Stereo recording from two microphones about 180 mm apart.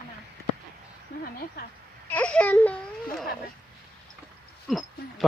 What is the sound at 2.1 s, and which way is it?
Whimper, 10° left (ahead or behind).